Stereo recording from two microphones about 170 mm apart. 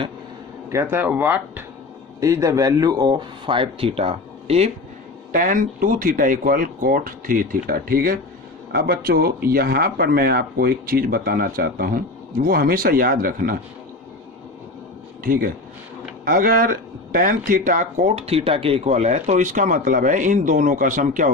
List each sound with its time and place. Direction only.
0.7 s speech: 15° right (ahead or behind); by 4.7 s 35° right (ahead or behind)
5.3 s speech: 55° right (ahead or behind)
15.2 s speech: 60° right (ahead or behind)